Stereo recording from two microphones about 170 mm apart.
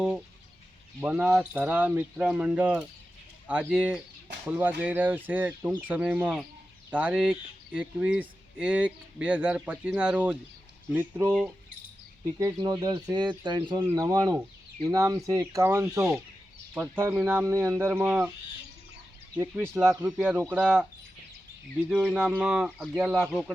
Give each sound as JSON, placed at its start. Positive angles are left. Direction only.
{"t": 1.0, "sound": "speech", "side_deg": -10}
{"t": 12.5, "sound": "speech", "side_deg": -25}
{"t": 19.5, "sound": "speech", "side_deg": -10}
{"t": 21.8, "sound": "speech", "side_deg": -5}